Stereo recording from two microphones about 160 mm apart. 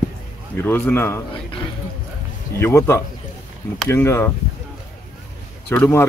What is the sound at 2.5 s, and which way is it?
A man's voice, 15° left (ahead or behind).